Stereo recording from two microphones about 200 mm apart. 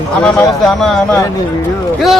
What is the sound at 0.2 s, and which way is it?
A man's voice, 5° left (ahead or behind).